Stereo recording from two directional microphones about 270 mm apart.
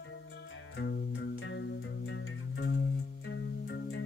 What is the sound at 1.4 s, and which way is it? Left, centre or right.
Music, left.